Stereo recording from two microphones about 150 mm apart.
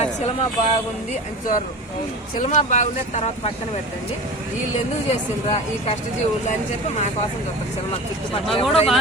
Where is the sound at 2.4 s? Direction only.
50° left (ahead or behind).